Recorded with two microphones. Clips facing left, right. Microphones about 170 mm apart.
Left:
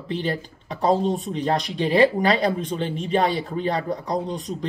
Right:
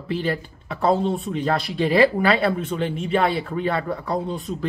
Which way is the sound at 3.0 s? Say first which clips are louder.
Even; 40° left (ahead or behind).